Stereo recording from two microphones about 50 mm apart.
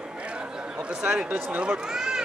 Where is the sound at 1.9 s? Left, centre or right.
Centre.